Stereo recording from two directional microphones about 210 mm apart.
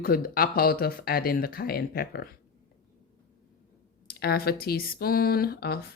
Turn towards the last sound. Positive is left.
turn(degrees=50)  # may be behind; listen again after turning